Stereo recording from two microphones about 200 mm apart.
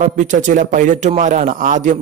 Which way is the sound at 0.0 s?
40° right (ahead or behind).